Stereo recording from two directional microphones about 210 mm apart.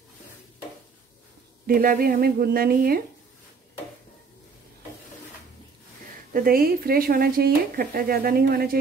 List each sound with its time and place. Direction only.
1.7 s speech: 45° right (ahead or behind)
6.3 s speech: 45° right (ahead or behind)